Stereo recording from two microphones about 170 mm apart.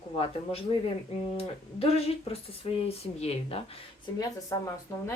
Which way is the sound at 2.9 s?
35° left (ahead or behind).